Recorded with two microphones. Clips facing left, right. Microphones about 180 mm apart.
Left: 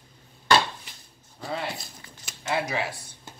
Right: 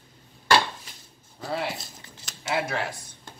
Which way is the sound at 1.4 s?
Centre (ahead or behind).